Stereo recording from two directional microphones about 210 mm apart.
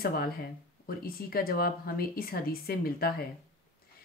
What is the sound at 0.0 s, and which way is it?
Speech, 45° left (ahead or behind).